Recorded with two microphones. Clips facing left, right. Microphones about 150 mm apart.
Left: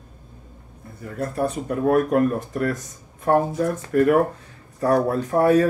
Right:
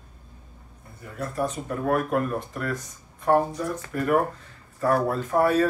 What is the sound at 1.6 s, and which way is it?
Speech, 45° left (ahead or behind).